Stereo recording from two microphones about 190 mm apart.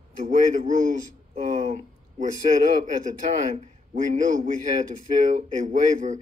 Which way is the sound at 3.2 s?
40° right (ahead or behind).